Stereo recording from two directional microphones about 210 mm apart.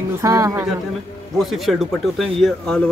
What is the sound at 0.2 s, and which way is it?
Speech, 15° right (ahead or behind).